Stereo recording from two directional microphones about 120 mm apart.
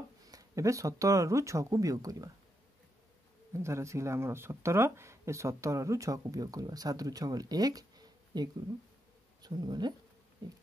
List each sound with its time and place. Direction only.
0.3 s speech: 30° right (ahead or behind)
3.5 s speech: 25° right (ahead or behind)